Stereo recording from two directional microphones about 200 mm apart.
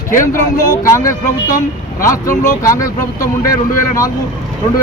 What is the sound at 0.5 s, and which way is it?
A man's voice, 15° left (ahead or behind).